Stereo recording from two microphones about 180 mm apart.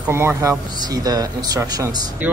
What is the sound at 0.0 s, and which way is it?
Speech, 15° right (ahead or behind).